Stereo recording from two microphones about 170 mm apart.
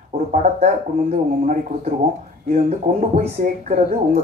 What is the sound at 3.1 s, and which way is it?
Speech, 45° right (ahead or behind).